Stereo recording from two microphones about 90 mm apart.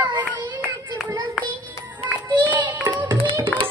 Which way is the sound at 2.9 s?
25° right (ahead or behind).